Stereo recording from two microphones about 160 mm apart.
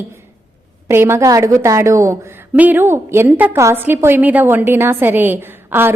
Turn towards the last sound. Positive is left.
turn(degrees=-15)  # may be behind; listen again after turning